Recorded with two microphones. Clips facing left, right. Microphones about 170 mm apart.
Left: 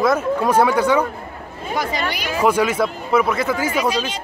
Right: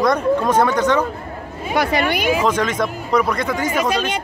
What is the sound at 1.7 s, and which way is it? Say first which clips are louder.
Speech: right 5 dB; 70° right (ahead or behind).